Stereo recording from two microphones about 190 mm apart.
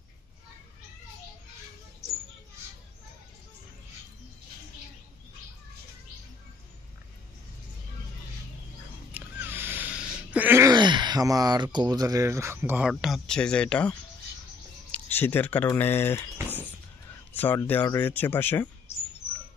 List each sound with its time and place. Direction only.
9.1 s a sound: 10° right (ahead or behind)
11.9 s speech: 20° right (ahead or behind); by 16.3 s 10° left (ahead or behind)
17.4 s speech: 10° left (ahead or behind)